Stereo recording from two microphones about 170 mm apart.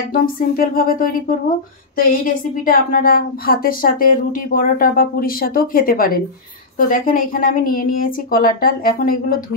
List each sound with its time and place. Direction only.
0.1 s a woman's voice: 55° left (ahead or behind)